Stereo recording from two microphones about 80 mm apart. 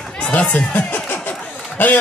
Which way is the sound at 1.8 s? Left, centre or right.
Left.